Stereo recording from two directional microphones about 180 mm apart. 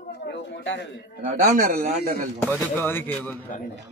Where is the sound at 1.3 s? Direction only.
45° right (ahead or behind).